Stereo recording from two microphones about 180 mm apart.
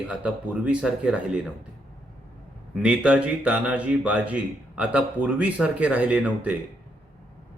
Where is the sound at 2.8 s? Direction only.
5° right (ahead or behind).